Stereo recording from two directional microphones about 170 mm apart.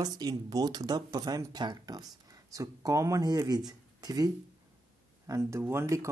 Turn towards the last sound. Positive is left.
turn(degrees=-15)  # may be behind; listen again after turning